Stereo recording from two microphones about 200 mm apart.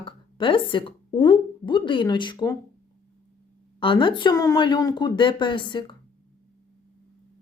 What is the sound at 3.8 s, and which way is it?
Speech, 25° left (ahead or behind).